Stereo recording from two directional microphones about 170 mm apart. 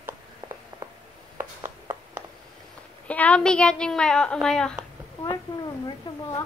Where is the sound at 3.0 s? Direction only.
10° left (ahead or behind).